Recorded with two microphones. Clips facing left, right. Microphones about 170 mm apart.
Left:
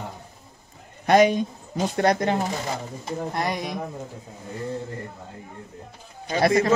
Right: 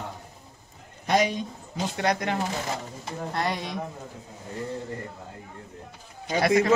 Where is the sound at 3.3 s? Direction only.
10° left (ahead or behind).